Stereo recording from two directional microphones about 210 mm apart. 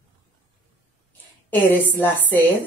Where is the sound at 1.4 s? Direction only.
10° left (ahead or behind).